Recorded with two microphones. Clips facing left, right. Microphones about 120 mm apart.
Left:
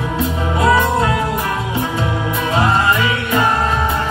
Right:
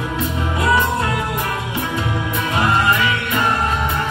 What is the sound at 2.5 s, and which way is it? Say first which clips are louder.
Music: left 2 dB; 30° left (ahead or behind).